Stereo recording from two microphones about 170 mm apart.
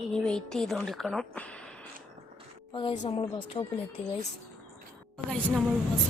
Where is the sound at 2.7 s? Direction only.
30° left (ahead or behind).